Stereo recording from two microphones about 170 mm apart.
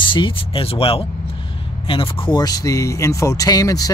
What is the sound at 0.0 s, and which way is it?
Speech, 30° left (ahead or behind).